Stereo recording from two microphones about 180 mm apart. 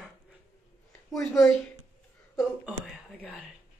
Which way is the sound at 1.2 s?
Centre (ahead or behind).